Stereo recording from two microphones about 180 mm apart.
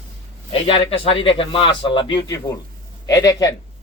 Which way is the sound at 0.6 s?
30° left (ahead or behind).